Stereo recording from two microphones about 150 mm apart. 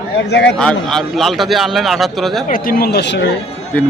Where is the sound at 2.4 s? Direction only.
70° left (ahead or behind); by 3.3 s 90° left.